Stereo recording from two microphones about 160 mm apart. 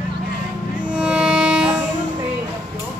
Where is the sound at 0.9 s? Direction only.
5° right (ahead or behind).